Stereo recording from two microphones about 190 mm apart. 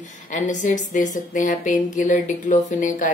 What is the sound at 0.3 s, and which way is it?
A woman's voice, 40° left (ahead or behind).